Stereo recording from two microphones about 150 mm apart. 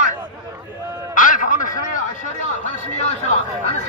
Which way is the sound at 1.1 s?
60° left (ahead or behind).